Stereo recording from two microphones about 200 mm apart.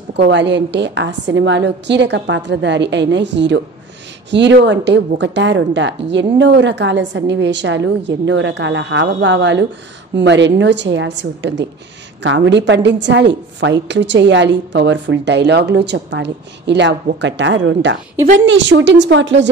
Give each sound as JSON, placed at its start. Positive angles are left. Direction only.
{"t": 0.1, "sound": "a woman's voice", "side_deg": -60}